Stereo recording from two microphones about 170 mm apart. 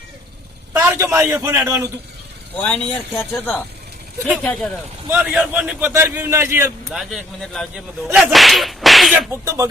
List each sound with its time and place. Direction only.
0.8 s a man's voice: 15° right (ahead or behind)
2.6 s a man's voice: 5° left (ahead or behind)
5.1 s a man's voice: 5° right (ahead or behind)
6.9 s a man's voice: centre (ahead or behind)
9.3 s a man's voice: 15° right (ahead or behind)